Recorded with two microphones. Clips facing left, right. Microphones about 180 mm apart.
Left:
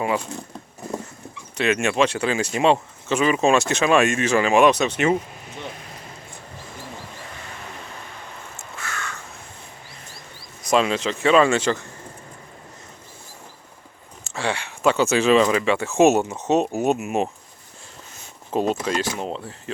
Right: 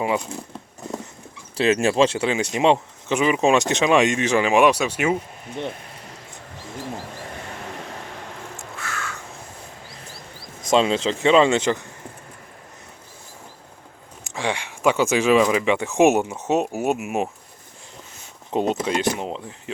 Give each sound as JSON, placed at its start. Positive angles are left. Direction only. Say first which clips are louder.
{"t": 1.5, "sound": "speech", "louder": "right 2 dB", "side_deg": -30}
{"t": 7.9, "sound": "vehicle", "louder": "right 4 dB", "side_deg": -80}
{"t": 8.5, "sound": "crow", "louder": "left 1 dB", "side_deg": 0}
{"t": 10.7, "sound": "speech", "louder": "right 1 dB", "side_deg": -25}
{"t": 14.3, "sound": "speech", "louder": "even", "side_deg": -15}
{"t": 18.5, "sound": "speech", "louder": "even", "side_deg": -20}